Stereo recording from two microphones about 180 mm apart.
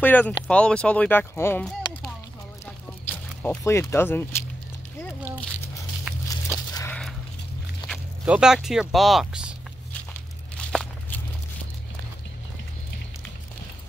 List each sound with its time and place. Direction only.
0.0 s speech: 10° left (ahead or behind)
2.6 s a sound: 15° left (ahead or behind)
6.1 s a sound: 10° right (ahead or behind)
6.9 s coin: centre (ahead or behind)
7.8 s walk: 25° left (ahead or behind)
8.3 s speech: 5° right (ahead or behind)
10.6 s walk: 5° left (ahead or behind)